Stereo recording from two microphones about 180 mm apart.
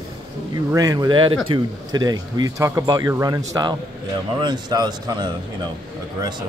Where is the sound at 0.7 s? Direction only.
20° right (ahead or behind).